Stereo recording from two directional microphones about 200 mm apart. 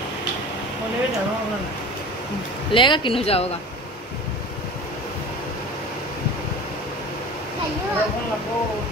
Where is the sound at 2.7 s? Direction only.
25° left (ahead or behind).